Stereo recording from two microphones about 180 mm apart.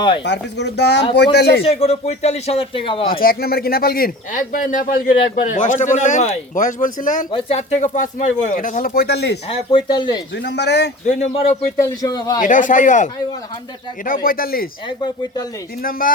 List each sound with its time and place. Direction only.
0.3 s speech: 70° left (ahead or behind)
1.6 s speech: 35° left (ahead or behind)
3.1 s speech: 55° left (ahead or behind)
7.3 s speech: 30° left (ahead or behind); by 9.4 s 65° left (ahead or behind)
9.5 s speech: 30° left (ahead or behind)
10.3 s speech: 70° left (ahead or behind)
11.0 s speech: 40° left (ahead or behind)
11.9 s speech: 20° left (ahead or behind)
12.4 s speech: 45° left (ahead or behind)
14.8 s speech: 25° left (ahead or behind)
15.8 s speech: 50° left (ahead or behind)